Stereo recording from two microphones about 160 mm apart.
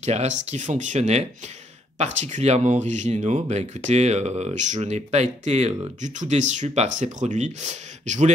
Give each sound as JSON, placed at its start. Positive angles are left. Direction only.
{"t": 0.0, "sound": "speech", "side_deg": -45}